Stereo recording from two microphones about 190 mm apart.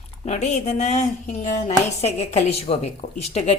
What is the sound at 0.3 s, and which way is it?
Speech, 35° left (ahead or behind).